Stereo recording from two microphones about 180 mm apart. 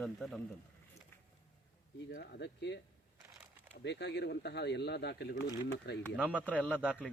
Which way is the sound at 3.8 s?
70° left (ahead or behind).